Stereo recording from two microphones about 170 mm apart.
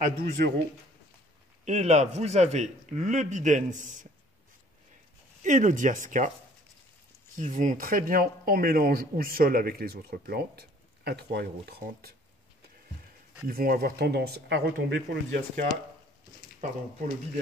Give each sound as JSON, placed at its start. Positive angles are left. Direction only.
{"t": 0.0, "sound": "speech", "side_deg": -60}
{"t": 1.6, "sound": "a man's voice", "side_deg": -40}
{"t": 5.4, "sound": "a man's voice", "side_deg": -45}
{"t": 7.3, "sound": "speech", "side_deg": -50}
{"t": 13.5, "sound": "speech", "side_deg": -60}